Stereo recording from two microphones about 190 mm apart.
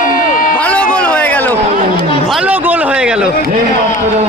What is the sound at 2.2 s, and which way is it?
A man's voice, 5° right (ahead or behind).